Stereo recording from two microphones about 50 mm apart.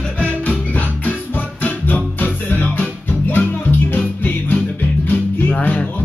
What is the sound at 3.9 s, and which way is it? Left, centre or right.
Music, left.